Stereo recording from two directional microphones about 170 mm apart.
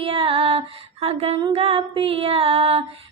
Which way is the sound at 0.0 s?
30° right (ahead or behind).